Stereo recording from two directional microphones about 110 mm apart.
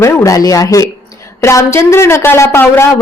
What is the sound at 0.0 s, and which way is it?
A woman's voice, 25° left (ahead or behind).